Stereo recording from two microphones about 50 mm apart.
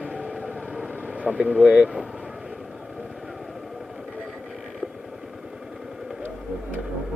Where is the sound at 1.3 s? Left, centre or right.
Centre.